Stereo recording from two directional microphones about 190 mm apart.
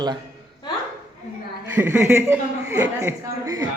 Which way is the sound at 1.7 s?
10° right (ahead or behind).